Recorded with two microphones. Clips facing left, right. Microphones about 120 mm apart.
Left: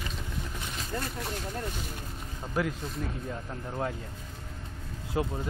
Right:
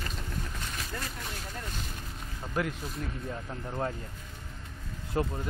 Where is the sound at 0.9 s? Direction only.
25° left (ahead or behind).